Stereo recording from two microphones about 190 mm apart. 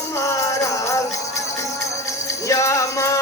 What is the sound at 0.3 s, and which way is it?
Music, 15° left (ahead or behind).